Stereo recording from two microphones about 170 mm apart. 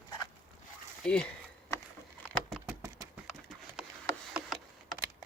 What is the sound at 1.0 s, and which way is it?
Speech, 5° left (ahead or behind).